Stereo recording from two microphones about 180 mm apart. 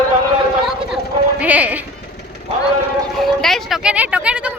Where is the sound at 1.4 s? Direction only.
10° right (ahead or behind).